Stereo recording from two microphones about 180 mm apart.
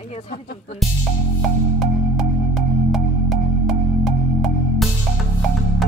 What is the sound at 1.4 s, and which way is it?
Music, centre (ahead or behind).